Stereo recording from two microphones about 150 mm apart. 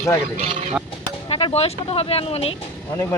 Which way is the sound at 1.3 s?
40° left (ahead or behind).